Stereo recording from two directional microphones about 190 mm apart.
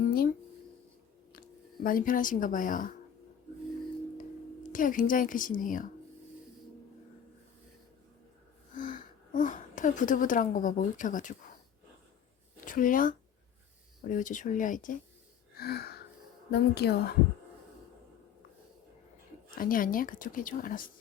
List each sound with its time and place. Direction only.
0.0 s music: 50° left (ahead or behind)
1.3 s speech: 50° left (ahead or behind)
4.7 s a woman's voice: 45° left (ahead or behind)
9.3 s a woman's voice: 40° left (ahead or behind)
12.6 s a woman's voice: 45° left (ahead or behind)
15.5 s a sound: 55° left (ahead or behind)
16.5 s a woman's voice: 60° left (ahead or behind)
19.5 s a woman's voice: 45° left (ahead or behind)